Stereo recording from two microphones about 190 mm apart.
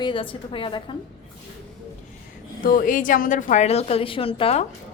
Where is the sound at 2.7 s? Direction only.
45° left (ahead or behind); by 4.6 s 30° left (ahead or behind).